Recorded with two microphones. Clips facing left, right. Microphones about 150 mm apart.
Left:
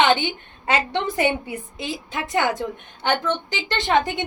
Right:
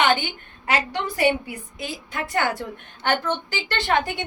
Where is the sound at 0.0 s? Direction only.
25° left (ahead or behind).